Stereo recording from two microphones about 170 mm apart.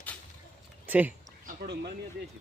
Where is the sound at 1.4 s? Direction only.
70° right (ahead or behind).